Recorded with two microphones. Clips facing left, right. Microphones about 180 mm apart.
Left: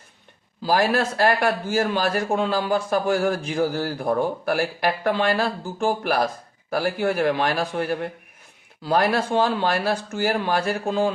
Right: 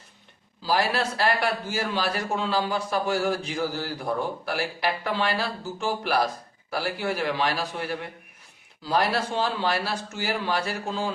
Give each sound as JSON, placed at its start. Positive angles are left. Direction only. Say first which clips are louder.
{"t": 0.6, "sound": "a man's voice", "louder": "left 4 dB", "side_deg": 50}